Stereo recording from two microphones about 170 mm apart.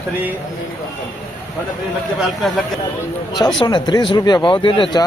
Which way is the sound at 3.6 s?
25° left (ahead or behind).